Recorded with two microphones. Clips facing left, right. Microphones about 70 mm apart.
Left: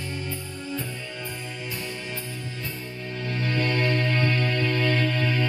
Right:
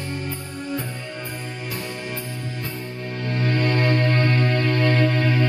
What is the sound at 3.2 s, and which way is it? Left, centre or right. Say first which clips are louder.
Music: right 4 dB; right.